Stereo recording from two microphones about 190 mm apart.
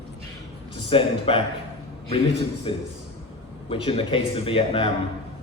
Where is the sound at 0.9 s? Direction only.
30° left (ahead or behind).